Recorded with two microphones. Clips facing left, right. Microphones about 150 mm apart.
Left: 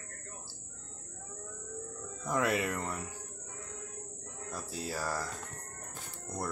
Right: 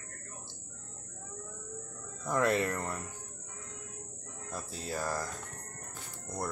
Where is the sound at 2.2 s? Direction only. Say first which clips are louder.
Right 2 dB; 10° left (ahead or behind).